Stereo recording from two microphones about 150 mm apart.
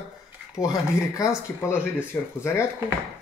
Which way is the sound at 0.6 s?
25° left (ahead or behind).